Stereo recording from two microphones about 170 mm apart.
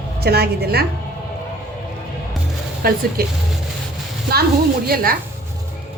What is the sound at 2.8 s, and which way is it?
Speech, 60° right (ahead or behind).